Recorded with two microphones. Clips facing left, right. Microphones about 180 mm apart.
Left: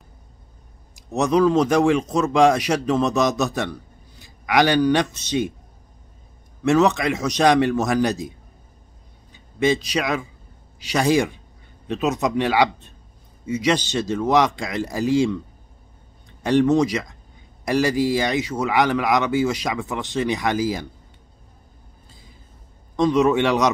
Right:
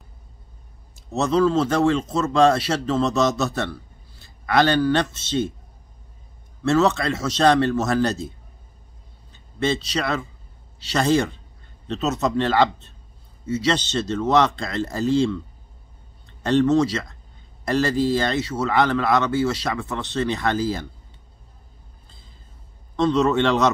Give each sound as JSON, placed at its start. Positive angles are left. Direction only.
{"t": 0.9, "sound": "a man's voice", "side_deg": 15}
{"t": 6.6, "sound": "a man's voice", "side_deg": 15}
{"t": 22.9, "sound": "a man's voice", "side_deg": 10}